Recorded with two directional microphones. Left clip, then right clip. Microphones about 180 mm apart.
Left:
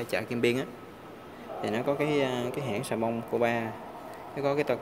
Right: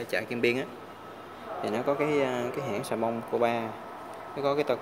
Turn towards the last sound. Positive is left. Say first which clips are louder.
# right 1 dB
turn(degrees=10)  # may be behind; listen again after turning